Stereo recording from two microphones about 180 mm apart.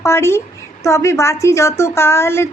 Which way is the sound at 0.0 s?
15° left (ahead or behind).